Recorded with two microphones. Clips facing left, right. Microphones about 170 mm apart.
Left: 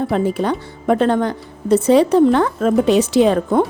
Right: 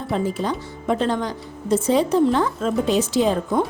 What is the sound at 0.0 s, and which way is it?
Speech, 65° left (ahead or behind).